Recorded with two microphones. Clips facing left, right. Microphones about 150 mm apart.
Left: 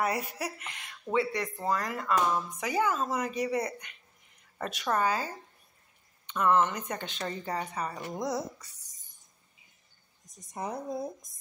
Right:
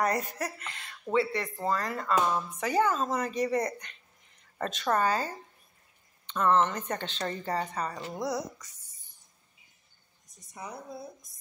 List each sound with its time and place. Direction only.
0.0 s a woman's voice: 10° left (ahead or behind)
1.1 s speech: 10° right (ahead or behind)
1.6 s a woman's voice: 15° left (ahead or behind)
8.1 s speech: 20° left (ahead or behind)
10.5 s speech: 45° left (ahead or behind)